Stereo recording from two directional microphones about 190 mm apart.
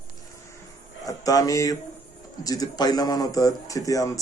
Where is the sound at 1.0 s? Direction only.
20° left (ahead or behind).